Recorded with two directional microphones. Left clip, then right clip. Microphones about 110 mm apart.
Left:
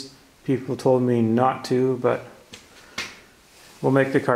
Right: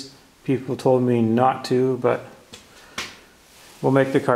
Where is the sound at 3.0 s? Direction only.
20° right (ahead or behind).